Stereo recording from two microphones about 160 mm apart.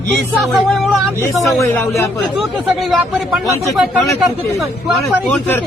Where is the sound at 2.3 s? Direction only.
Centre (ahead or behind).